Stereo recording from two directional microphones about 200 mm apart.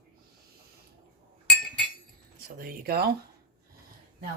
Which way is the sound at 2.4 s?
50° right (ahead or behind).